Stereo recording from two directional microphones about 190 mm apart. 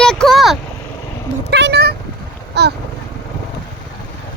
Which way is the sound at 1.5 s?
60° right (ahead or behind).